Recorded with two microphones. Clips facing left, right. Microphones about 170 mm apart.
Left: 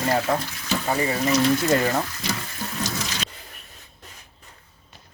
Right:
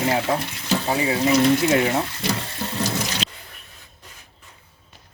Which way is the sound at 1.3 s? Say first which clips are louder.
Right 2 dB; 20° right (ahead or behind).